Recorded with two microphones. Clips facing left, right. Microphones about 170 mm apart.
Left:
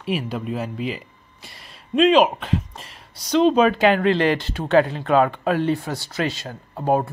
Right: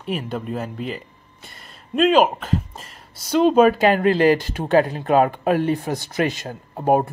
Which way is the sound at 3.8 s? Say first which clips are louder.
Right 2 dB; 40° right (ahead or behind).